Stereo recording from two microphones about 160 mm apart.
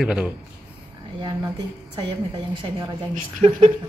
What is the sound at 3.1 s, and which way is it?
Speech, 55° right (ahead or behind).